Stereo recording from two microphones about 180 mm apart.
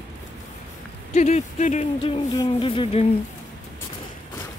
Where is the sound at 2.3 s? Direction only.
30° left (ahead or behind).